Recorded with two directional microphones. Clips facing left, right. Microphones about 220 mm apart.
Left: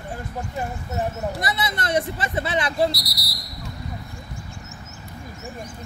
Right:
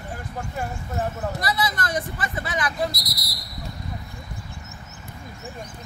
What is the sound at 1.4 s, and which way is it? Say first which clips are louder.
Speech: right 1 dB; 25° left (ahead or behind).